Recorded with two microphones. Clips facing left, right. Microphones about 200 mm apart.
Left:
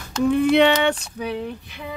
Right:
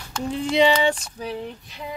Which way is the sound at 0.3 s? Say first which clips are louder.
Left 3 dB; 60° left (ahead or behind).